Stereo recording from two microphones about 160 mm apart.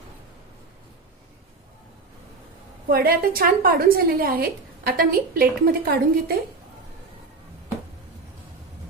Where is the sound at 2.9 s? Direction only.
70° right (ahead or behind).